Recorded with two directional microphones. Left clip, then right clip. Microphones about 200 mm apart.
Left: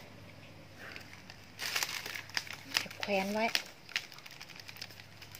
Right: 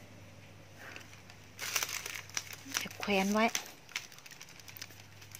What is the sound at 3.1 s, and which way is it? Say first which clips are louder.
Speech: right 4 dB; 35° right (ahead or behind).